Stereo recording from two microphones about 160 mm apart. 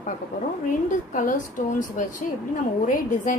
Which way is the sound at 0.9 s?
55° left (ahead or behind).